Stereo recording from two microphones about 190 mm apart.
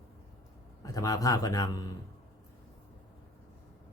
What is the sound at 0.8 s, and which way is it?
Speech, 20° left (ahead or behind).